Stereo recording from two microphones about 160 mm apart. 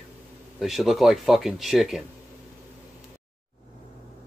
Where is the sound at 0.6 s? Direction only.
Centre (ahead or behind).